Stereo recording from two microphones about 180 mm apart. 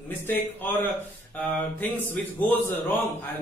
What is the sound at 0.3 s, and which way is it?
A man's voice, 10° left (ahead or behind).